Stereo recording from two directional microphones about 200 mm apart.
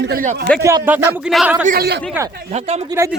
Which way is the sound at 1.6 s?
50° right (ahead or behind).